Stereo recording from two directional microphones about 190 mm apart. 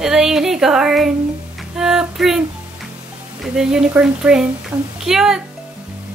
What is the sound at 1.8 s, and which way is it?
Music, 5° right (ahead or behind).